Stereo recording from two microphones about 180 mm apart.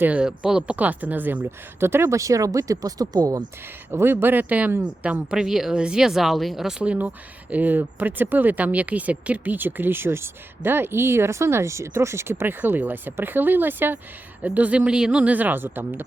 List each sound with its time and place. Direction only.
0.0 s speech: 5° right (ahead or behind)